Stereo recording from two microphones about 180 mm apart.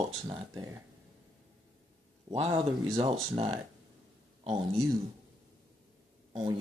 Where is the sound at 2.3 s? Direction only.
25° right (ahead or behind).